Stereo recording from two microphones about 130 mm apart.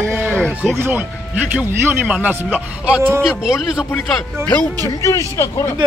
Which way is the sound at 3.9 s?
5° left (ahead or behind).